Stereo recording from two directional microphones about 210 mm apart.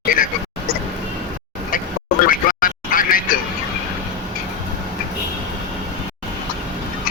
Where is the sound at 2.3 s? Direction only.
40° left (ahead or behind).